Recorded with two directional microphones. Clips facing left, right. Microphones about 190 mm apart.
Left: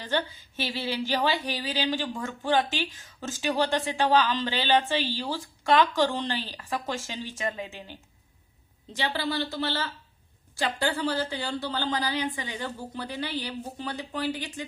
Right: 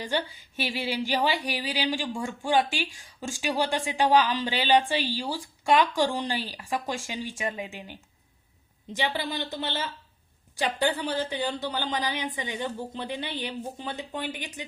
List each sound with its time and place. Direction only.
0.0 s a woman's voice: 15° right (ahead or behind)
9.0 s speech: 15° right (ahead or behind)